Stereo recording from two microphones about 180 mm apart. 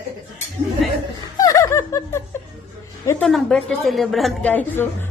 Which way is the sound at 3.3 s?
5° left (ahead or behind).